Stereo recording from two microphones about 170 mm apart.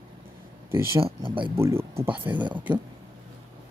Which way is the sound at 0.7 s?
15° right (ahead or behind).